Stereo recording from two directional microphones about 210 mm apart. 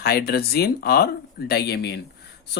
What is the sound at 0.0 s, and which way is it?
Speech, 50° left (ahead or behind).